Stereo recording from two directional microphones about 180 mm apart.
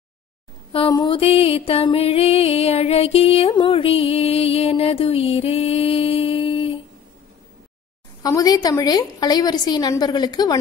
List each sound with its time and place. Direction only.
0.7 s music: 25° left (ahead or behind)
8.2 s a woman's voice: 20° left (ahead or behind)